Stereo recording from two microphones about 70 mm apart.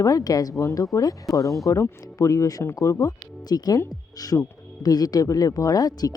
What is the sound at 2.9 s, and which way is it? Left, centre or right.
Speech, left.